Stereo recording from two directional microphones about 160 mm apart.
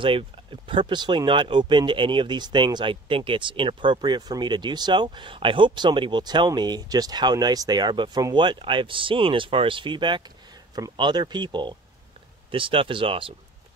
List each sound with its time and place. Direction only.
0.0 s speech: 30° right (ahead or behind)